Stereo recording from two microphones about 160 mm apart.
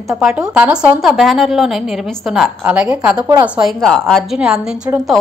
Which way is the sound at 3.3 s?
20° right (ahead or behind).